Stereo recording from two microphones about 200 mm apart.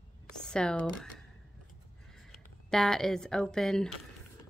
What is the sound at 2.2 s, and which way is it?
Speech, centre (ahead or behind).